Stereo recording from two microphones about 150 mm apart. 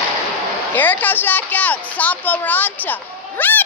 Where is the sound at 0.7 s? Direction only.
10° left (ahead or behind).